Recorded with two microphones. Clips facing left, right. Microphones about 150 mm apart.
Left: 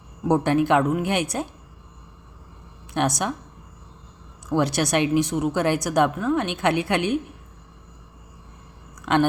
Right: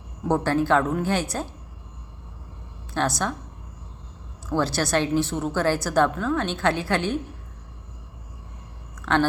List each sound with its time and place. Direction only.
0.3 s a woman's voice: 15° left (ahead or behind)
2.9 s a woman's voice: 20° left (ahead or behind)
4.4 s a woman's voice: 20° left (ahead or behind)
9.0 s a sound: 15° left (ahead or behind)